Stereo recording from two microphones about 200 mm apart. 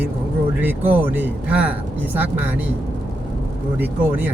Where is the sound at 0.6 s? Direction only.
10° right (ahead or behind).